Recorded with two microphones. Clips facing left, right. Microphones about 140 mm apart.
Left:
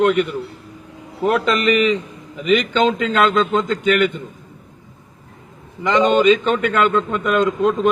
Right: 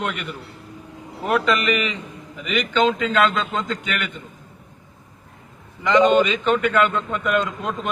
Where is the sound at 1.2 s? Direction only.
30° left (ahead or behind).